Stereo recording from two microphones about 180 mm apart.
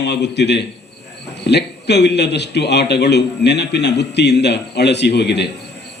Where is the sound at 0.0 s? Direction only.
70° left (ahead or behind).